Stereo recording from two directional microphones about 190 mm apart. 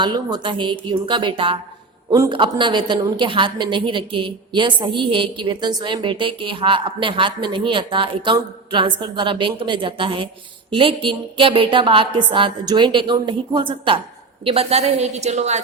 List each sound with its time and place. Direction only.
0.0 s a woman's voice: 25° right (ahead or behind)